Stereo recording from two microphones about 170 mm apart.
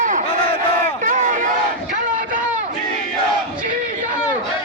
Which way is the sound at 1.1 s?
50° right (ahead or behind).